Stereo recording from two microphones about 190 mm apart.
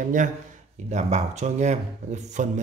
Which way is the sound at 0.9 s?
35° right (ahead or behind).